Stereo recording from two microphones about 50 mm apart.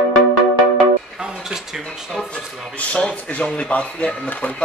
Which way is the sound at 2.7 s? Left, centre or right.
Left.